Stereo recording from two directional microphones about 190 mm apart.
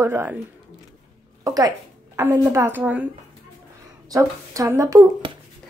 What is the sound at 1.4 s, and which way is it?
A woman's voice, 20° right (ahead or behind).